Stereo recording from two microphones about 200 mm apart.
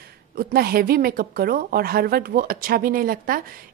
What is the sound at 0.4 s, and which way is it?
A woman's voice, 50° right (ahead or behind).